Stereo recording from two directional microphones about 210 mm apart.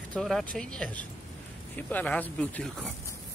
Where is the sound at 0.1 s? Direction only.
Centre (ahead or behind).